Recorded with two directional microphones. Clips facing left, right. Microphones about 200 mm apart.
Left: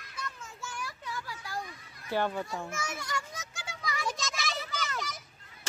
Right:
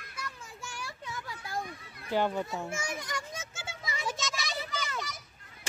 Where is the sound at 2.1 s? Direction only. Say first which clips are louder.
Right 2 dB; 15° right (ahead or behind).